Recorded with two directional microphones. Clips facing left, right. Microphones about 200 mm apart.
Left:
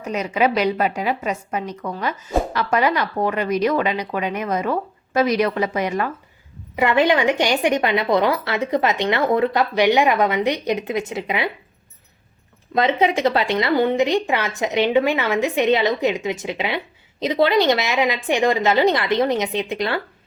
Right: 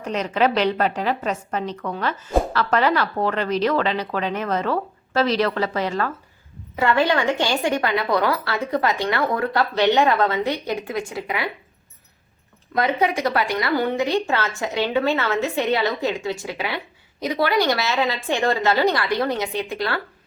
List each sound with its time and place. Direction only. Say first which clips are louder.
0.0 s a woman's voice: left 1 dB; 10° left (ahead or behind)
12.7 s a woman's voice: left 3 dB; 25° left (ahead or behind)